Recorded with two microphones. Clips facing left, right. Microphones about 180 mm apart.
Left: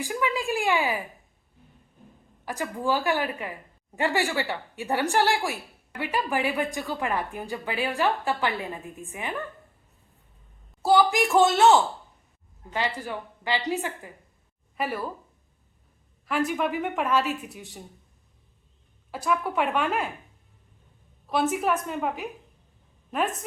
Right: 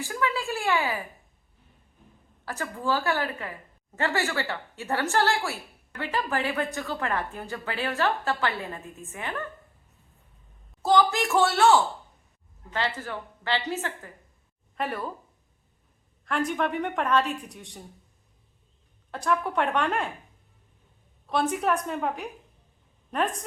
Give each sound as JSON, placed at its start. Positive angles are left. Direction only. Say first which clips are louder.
{"t": 0.0, "sound": "a woman's voice", "louder": "left 1 dB", "side_deg": 15}
{"t": 2.4, "sound": "a woman's voice", "louder": "left 3 dB", "side_deg": 15}
{"t": 10.8, "sound": "a woman's voice", "louder": "left 2 dB", "side_deg": 10}
{"t": 16.2, "sound": "a woman's voice", "louder": "left 1 dB", "side_deg": 5}
{"t": 19.1, "sound": "a woman's voice", "louder": "even", "side_deg": 5}
{"t": 21.2, "sound": "a woman's voice", "louder": "left 1 dB", "side_deg": 5}